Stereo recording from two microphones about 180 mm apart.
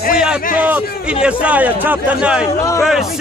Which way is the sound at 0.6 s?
10° right (ahead or behind).